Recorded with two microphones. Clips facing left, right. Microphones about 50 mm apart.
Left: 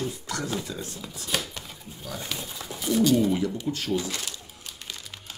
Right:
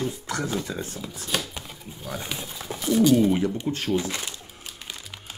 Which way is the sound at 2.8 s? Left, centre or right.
Centre.